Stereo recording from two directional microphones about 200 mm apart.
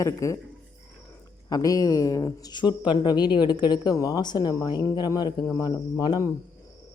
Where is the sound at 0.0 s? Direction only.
15° left (ahead or behind).